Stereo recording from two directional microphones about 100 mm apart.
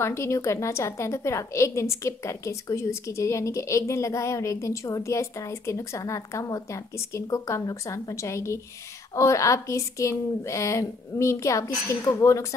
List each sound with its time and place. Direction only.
0.0 s a woman's voice: 25° left (ahead or behind)